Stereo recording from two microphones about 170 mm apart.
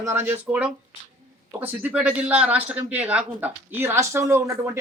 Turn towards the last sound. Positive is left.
turn(degrees=-15)  # may be behind; listen again after turning